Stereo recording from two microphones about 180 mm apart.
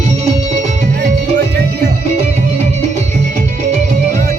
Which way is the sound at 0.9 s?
70° right (ahead or behind).